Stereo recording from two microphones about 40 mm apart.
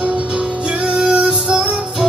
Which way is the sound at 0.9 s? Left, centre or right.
Right.